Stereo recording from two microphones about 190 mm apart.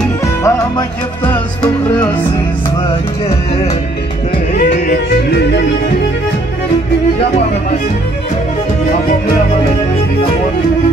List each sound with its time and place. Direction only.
0.0 s music: 15° left (ahead or behind)
4.6 s music: 50° left (ahead or behind)